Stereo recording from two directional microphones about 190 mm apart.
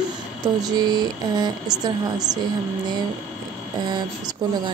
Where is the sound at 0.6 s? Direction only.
20° right (ahead or behind).